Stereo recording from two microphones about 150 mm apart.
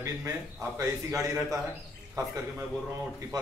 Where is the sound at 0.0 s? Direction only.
20° right (ahead or behind).